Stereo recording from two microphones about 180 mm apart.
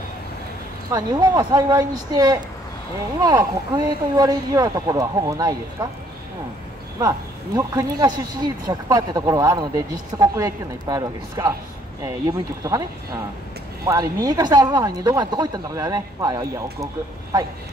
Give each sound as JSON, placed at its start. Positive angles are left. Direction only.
{"t": 0.9, "sound": "speech", "side_deg": -20}
{"t": 7.0, "sound": "speech", "side_deg": -20}